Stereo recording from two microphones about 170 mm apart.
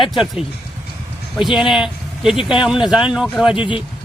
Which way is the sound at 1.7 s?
5° right (ahead or behind).